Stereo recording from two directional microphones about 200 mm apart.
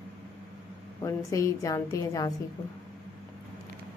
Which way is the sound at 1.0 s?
15° left (ahead or behind).